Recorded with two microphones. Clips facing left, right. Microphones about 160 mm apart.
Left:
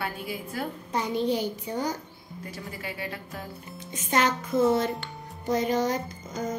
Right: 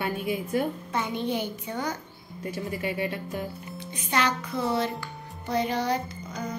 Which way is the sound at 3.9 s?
45° left (ahead or behind).